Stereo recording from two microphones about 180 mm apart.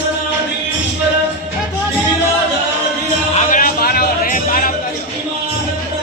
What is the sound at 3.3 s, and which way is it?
Music, 50° left (ahead or behind).